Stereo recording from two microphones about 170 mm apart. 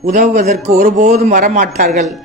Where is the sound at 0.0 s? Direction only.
45° right (ahead or behind).